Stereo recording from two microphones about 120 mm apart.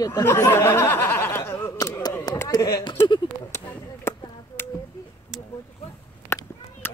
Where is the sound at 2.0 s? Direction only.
35° left (ahead or behind).